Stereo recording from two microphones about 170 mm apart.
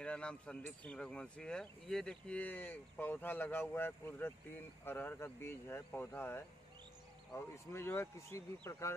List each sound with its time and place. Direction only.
0.0 s speech: 5° left (ahead or behind)